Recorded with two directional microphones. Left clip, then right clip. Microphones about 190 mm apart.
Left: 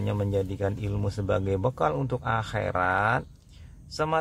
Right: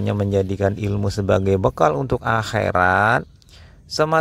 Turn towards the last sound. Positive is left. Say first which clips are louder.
# right 9 dB
turn(degrees=-35)  # may be behind; listen again after turning